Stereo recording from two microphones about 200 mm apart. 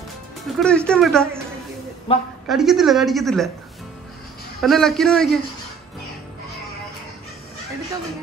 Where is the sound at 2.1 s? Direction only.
30° left (ahead or behind).